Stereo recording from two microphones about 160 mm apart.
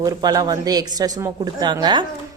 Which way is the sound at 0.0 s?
25° right (ahead or behind).